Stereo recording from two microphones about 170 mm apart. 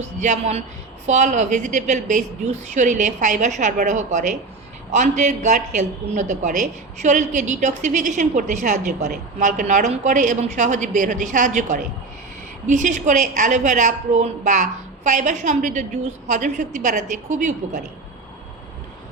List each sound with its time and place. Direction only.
0.0 s a woman's voice: 45° right (ahead or behind)